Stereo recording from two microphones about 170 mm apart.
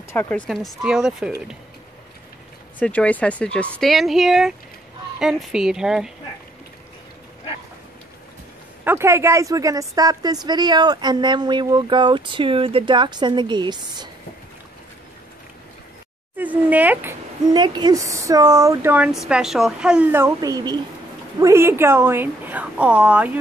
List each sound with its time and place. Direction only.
0.1 s speech: 15° left (ahead or behind)
0.5 s a woman's voice: centre (ahead or behind)
2.8 s a woman's voice: 10° left (ahead or behind)
8.8 s a woman's voice: 15° right (ahead or behind)
16.3 s speech: 10° right (ahead or behind)
17.5 s a woman's voice: 25° right (ahead or behind)
19.1 s a woman's voice: centre (ahead or behind)
20.3 s a woman's voice: 20° right (ahead or behind)